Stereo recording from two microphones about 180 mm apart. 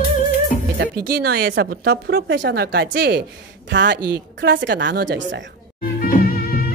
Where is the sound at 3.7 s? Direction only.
75° right (ahead or behind).